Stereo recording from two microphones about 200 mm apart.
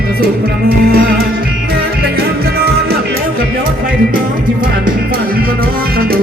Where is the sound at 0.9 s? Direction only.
50° right (ahead or behind).